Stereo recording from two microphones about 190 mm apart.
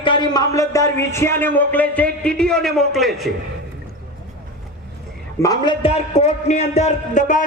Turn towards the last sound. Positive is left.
turn(degrees=40)  # may be behind; listen again after turning